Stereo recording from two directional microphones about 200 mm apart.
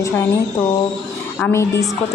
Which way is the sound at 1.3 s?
10° left (ahead or behind).